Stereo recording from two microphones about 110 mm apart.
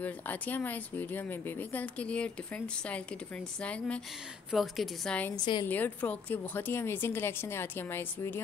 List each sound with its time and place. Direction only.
0.0 s speech: 15° left (ahead or behind)
4.5 s a woman's voice: centre (ahead or behind)
5.3 s a woman's voice: 40° left (ahead or behind)
5.7 s a woman's voice: 15° left (ahead or behind)